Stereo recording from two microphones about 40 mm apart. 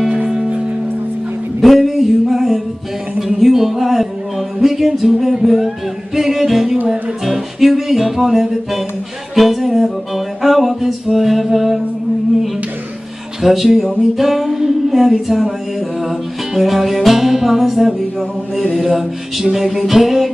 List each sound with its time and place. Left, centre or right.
1.6 s music: centre
13.4 s music: centre
18.7 s mantra: right
19.5 s music: centre